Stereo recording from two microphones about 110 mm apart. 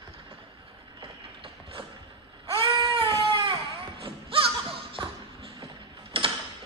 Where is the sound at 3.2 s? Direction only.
50° right (ahead or behind).